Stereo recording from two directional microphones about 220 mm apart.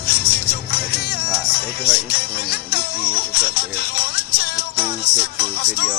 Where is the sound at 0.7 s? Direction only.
45° left (ahead or behind).